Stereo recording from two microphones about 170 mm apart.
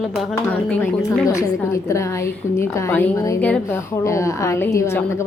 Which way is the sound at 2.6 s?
10° left (ahead or behind).